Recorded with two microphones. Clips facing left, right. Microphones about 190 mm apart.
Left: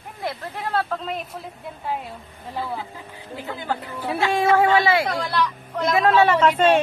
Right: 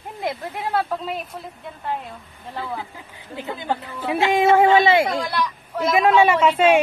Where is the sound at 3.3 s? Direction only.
20° right (ahead or behind).